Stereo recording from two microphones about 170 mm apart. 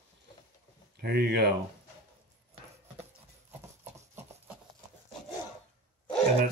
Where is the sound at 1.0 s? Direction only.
70° right (ahead or behind).